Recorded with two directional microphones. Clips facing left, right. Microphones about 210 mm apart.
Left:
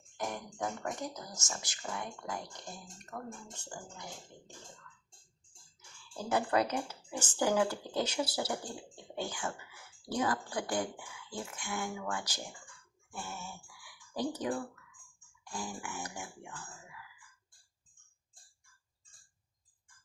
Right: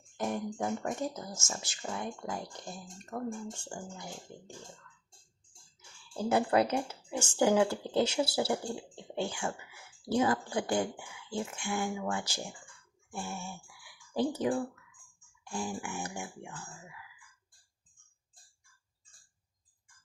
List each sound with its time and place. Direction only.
0.2 s speech: 25° right (ahead or behind)
6.2 s speech: 25° right (ahead or behind)